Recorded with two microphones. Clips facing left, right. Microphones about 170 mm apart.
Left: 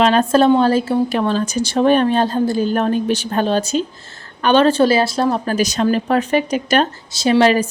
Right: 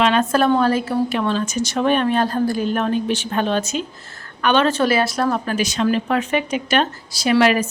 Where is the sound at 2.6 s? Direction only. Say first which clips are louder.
Left 3 dB; 40° left (ahead or behind).